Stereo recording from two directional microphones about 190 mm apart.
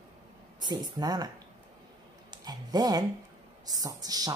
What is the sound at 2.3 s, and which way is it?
A woman's voice, 20° right (ahead or behind).